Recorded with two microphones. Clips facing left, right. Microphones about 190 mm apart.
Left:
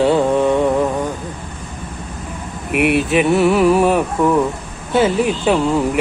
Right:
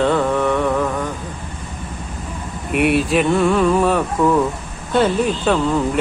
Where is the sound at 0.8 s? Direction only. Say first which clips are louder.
Left 3 dB; 35° left (ahead or behind).